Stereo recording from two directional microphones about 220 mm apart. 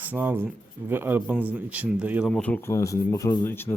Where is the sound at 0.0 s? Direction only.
10° right (ahead or behind).